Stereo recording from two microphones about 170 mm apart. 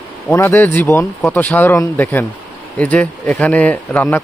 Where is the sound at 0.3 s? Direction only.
15° left (ahead or behind).